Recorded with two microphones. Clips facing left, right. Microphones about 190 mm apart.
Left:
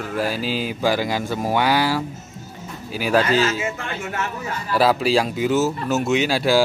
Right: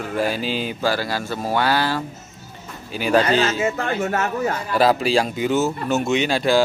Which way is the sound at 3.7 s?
40° right (ahead or behind).